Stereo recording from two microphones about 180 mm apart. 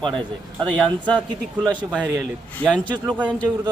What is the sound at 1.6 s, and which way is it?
Speech, centre (ahead or behind).